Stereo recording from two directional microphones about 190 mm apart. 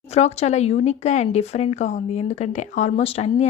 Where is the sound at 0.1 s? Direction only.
35° left (ahead or behind).